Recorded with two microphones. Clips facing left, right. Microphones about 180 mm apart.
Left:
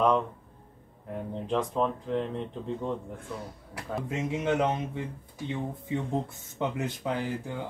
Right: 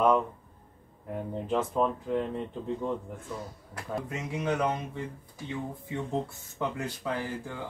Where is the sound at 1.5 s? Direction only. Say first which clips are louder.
Even; 5° right (ahead or behind).